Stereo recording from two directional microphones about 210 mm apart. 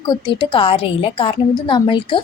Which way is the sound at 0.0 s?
20° left (ahead or behind).